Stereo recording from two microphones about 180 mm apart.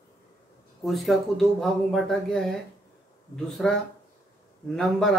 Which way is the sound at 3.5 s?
Centre (ahead or behind).